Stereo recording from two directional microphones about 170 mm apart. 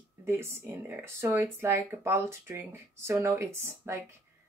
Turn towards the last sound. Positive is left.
turn(degrees=-15)  # may be behind; listen again after turning